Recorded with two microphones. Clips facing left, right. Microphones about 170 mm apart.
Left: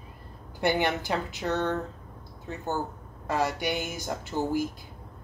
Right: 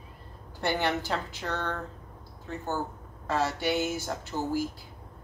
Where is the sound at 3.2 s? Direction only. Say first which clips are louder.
Even; 15° left (ahead or behind).